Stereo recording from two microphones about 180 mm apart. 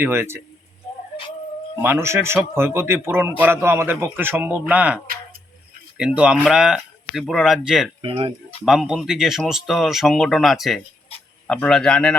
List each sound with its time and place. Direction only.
0.0 s a man's voice: 15° right (ahead or behind)
1.8 s a man's voice: 15° right (ahead or behind)
6.0 s speech: 5° right (ahead or behind)
8.0 s speech: 25° right (ahead or behind)
8.6 s speech: centre (ahead or behind)